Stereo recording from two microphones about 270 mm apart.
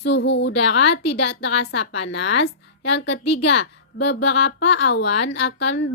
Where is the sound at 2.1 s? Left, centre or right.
Left.